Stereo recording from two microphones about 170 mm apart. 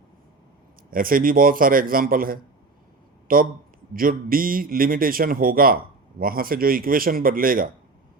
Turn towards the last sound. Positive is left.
turn(degrees=-55)  # may be behind; listen again after turning